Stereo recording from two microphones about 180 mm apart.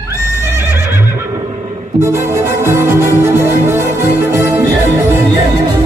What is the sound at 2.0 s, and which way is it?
Music, 15° right (ahead or behind).